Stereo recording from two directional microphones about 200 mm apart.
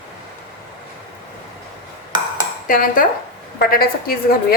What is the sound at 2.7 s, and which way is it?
A woman's voice, 45° left (ahead or behind).